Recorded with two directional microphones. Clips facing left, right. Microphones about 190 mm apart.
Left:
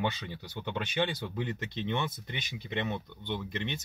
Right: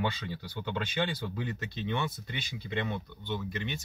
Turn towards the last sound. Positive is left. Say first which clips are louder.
# even
turn(degrees=20)  # may be behind; listen again after turning